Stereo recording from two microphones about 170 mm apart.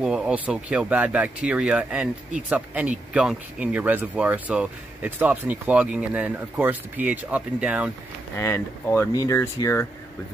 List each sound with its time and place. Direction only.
0.0 s speech: 5° right (ahead or behind)
8.4 s speech: 15° left (ahead or behind)